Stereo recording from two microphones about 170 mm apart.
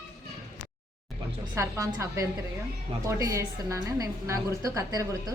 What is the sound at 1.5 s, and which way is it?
A woman's voice, 15° right (ahead or behind).